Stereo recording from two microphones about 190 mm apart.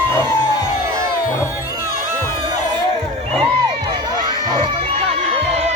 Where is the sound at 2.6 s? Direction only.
25° right (ahead or behind).